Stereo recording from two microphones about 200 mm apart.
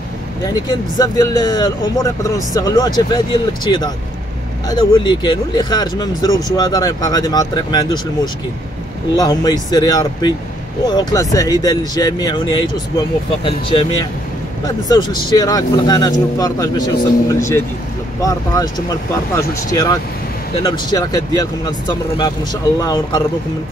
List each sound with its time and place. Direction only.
0.5 s speech: 20° left (ahead or behind)
4.6 s speech: 20° left (ahead or behind)